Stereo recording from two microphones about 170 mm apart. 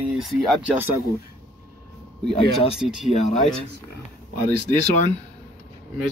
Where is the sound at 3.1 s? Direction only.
40° left (ahead or behind).